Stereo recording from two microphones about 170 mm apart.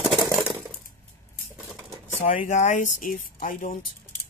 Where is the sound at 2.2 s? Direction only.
50° left (ahead or behind).